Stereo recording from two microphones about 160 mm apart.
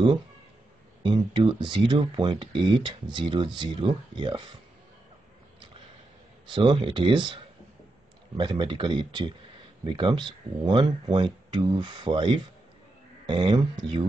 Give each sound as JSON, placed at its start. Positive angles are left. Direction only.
{"t": 1.0, "sound": "speech", "side_deg": -30}
{"t": 6.5, "sound": "speech", "side_deg": -30}
{"t": 8.4, "sound": "speech", "side_deg": -30}